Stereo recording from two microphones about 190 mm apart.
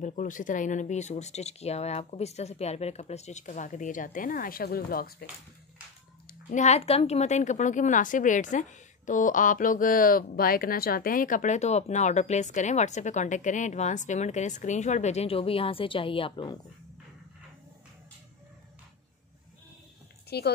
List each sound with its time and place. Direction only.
0.0 s a woman's voice: 45° left (ahead or behind)
6.5 s a woman's voice: 35° left (ahead or behind)
20.2 s speech: 60° left (ahead or behind)